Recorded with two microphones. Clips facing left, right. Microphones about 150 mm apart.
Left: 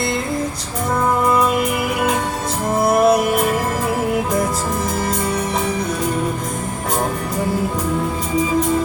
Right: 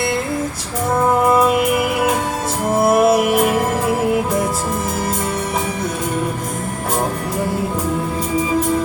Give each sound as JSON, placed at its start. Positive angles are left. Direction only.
{"t": 1.3, "sound": "music", "side_deg": -5}